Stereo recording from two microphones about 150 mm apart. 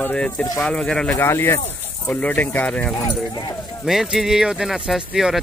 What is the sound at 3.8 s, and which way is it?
Speech, centre (ahead or behind).